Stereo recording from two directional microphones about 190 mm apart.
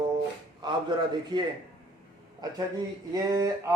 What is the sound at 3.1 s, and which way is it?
Speech, 20° right (ahead or behind).